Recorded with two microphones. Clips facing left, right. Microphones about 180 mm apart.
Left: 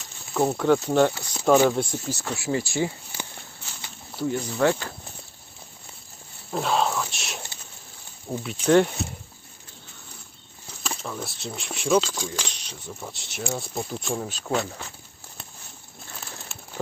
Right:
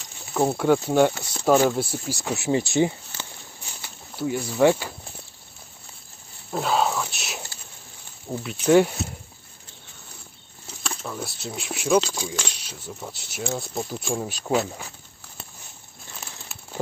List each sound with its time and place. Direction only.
0.3 s speech: 10° right (ahead or behind)
3.1 s walk: 10° left (ahead or behind)
3.8 s speech: 5° right (ahead or behind)
6.5 s whispering: centre (ahead or behind)
8.3 s speech: centre (ahead or behind)
10.8 s speech: centre (ahead or behind)